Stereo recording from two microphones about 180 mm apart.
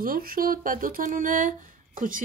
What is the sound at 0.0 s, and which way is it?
A woman's voice, 50° right (ahead or behind).